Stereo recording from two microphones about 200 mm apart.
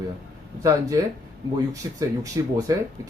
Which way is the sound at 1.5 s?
20° right (ahead or behind).